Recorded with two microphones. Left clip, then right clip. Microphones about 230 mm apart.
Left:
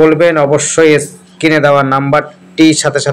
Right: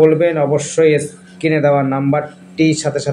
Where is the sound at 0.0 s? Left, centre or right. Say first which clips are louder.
Left 4 dB; left.